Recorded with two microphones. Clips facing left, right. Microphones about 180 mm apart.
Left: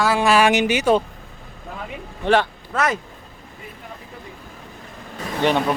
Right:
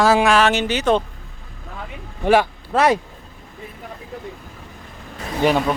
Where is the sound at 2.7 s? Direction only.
30° right (ahead or behind).